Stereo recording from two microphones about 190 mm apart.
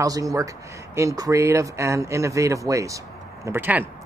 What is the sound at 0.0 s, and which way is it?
Speech, 20° right (ahead or behind).